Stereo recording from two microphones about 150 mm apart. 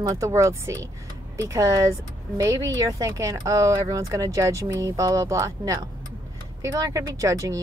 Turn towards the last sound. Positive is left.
turn(degrees=-20)  # may be behind; listen again after turning